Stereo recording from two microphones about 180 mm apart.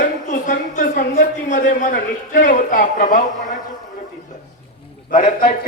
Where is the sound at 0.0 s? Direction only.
45° left (ahead or behind).